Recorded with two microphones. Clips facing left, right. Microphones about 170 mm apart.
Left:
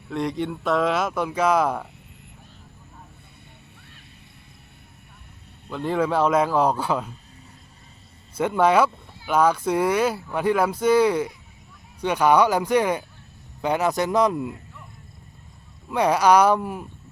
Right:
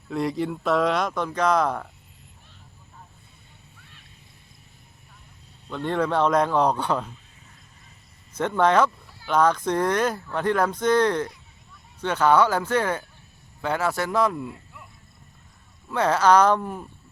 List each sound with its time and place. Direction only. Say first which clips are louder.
0.1 s speech: even; centre (ahead or behind)
5.6 s speech: left 1 dB; 5° left (ahead or behind)
8.4 s speech: left 1 dB; 10° left (ahead or behind)
15.9 s speech: left 1 dB; 15° left (ahead or behind)